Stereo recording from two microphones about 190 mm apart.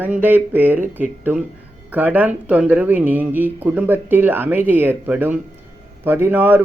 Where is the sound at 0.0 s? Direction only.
10° right (ahead or behind).